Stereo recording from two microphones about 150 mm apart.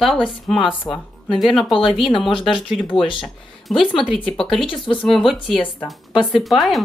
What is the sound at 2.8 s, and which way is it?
Speech, 35° left (ahead or behind).